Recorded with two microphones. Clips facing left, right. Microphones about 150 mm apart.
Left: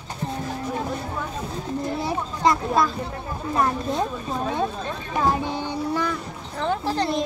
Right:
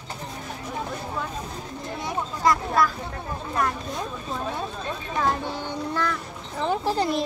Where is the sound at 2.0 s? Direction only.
25° left (ahead or behind).